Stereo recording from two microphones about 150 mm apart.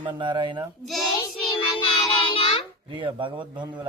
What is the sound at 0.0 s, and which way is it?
Speech, 30° right (ahead or behind).